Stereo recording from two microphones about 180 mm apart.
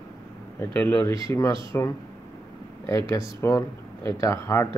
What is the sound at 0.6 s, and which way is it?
Speech, 10° left (ahead or behind).